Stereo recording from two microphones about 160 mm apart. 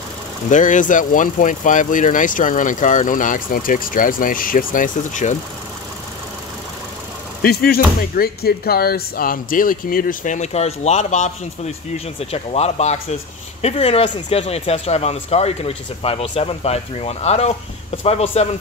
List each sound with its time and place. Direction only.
0.5 s speech: 50° left (ahead or behind)
7.4 s speech: 70° left (ahead or behind); by 18.5 s 40° left (ahead or behind)